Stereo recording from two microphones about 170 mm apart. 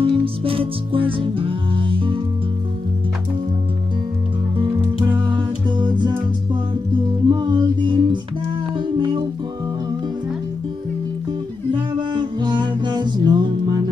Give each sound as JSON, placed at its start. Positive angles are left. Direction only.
{"t": 0.0, "sound": "music", "side_deg": -30}
{"t": 4.6, "sound": "music", "side_deg": -20}
{"t": 12.1, "sound": "music", "side_deg": -25}